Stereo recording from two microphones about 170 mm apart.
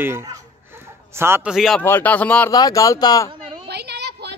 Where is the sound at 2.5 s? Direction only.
20° left (ahead or behind).